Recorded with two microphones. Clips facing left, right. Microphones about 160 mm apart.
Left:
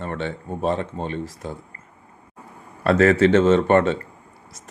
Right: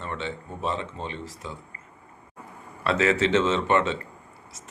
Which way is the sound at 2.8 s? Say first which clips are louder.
Left 7 dB; 50° left (ahead or behind).